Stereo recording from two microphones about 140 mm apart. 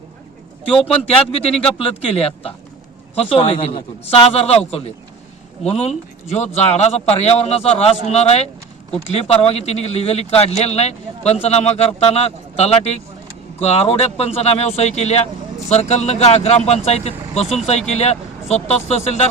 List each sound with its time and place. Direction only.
1.0 s a man's voice: 45° left (ahead or behind)